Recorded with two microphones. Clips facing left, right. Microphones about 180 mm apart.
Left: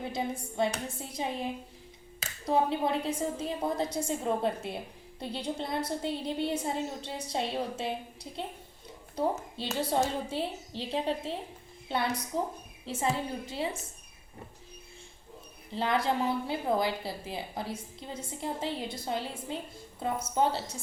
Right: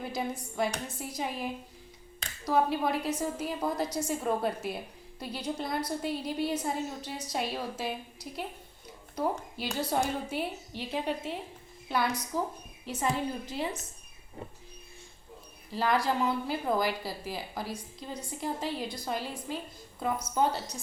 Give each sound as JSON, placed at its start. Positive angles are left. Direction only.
{"t": 0.0, "sound": "a woman's voice", "side_deg": 25}
{"t": 2.5, "sound": "a woman's voice", "side_deg": 25}
{"t": 9.6, "sound": "a woman's voice", "side_deg": 25}
{"t": 12.8, "sound": "a woman's voice", "side_deg": 25}
{"t": 15.7, "sound": "a woman's voice", "side_deg": 25}